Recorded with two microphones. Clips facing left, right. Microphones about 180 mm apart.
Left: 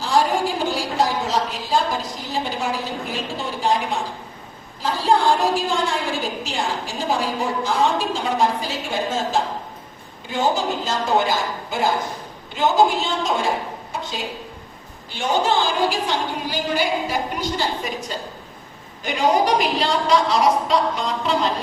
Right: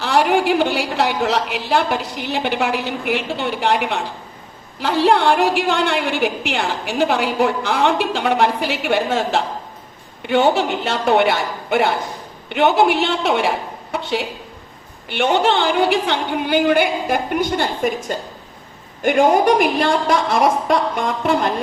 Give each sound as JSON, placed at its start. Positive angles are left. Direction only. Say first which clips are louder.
{"t": 0.0, "sound": "a woman's voice", "louder": "right 3 dB", "side_deg": -65}